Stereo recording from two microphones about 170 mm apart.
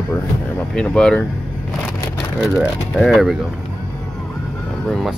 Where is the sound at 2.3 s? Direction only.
Centre (ahead or behind).